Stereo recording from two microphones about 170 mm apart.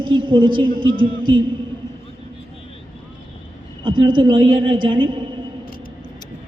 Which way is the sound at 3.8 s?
30° right (ahead or behind).